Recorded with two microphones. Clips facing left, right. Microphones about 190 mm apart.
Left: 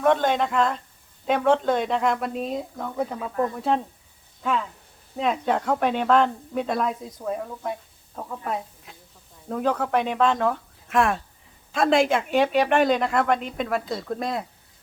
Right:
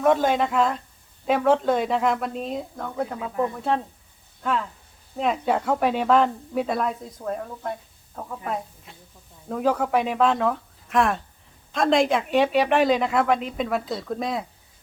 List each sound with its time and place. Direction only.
0.0 s speech: 5° right (ahead or behind)
3.2 s speech: 15° right (ahead or behind)
3.5 s speech: centre (ahead or behind)
5.1 s speech: centre (ahead or behind)